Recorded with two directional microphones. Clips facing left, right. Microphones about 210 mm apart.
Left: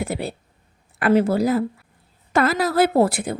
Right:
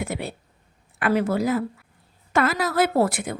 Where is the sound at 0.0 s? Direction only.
35° left (ahead or behind).